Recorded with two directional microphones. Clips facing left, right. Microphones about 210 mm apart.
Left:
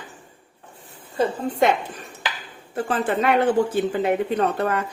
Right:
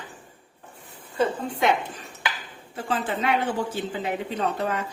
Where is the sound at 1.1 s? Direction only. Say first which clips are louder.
Left 3 dB; 45° left (ahead or behind).